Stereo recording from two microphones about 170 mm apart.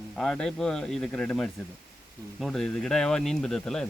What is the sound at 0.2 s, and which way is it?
Speech, 5° left (ahead or behind).